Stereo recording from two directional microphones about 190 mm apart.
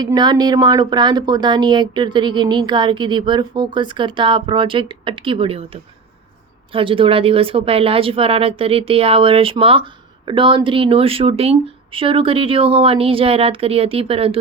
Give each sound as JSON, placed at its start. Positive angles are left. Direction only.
{"t": 0.0, "sound": "speech", "side_deg": -20}